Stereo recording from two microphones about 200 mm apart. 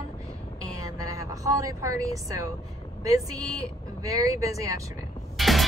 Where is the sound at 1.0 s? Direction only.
15° right (ahead or behind).